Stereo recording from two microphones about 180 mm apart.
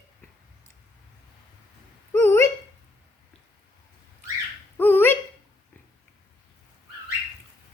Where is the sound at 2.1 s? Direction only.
10° left (ahead or behind).